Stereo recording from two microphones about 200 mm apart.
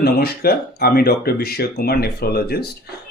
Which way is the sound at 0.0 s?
50° left (ahead or behind).